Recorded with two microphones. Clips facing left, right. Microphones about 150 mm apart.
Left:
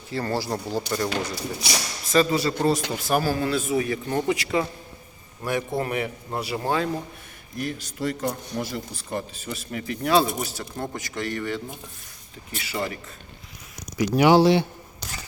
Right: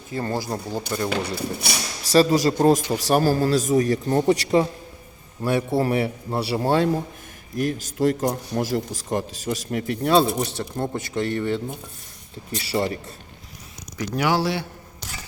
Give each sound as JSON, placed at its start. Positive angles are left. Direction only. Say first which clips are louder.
{"t": 0.1, "sound": "speech", "louder": "even", "side_deg": -20}
{"t": 1.2, "sound": "speech", "louder": "right 3 dB", "side_deg": -60}
{"t": 2.1, "sound": "speech", "louder": "right 4 dB", "side_deg": -40}
{"t": 7.6, "sound": "speech", "louder": "right 7 dB", "side_deg": -45}
{"t": 14.0, "sound": "speech", "louder": "left 6 dB", "side_deg": 15}